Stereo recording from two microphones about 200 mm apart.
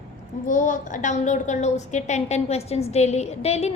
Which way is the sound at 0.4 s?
40° left (ahead or behind).